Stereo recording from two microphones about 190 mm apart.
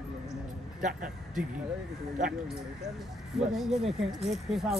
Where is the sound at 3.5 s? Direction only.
Centre (ahead or behind).